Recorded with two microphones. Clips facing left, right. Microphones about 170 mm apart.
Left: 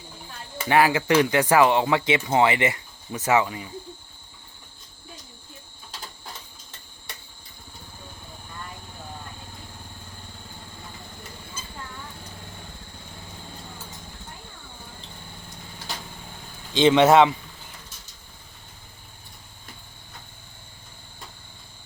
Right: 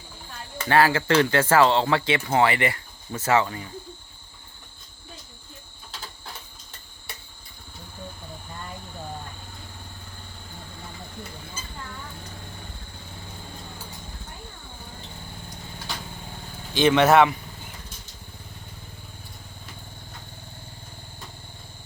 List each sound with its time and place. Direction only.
0.6 s speech: 15° left (ahead or behind)
16.7 s speech: 20° left (ahead or behind)